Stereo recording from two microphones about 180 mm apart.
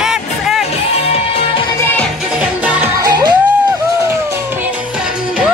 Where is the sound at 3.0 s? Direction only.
20° right (ahead or behind).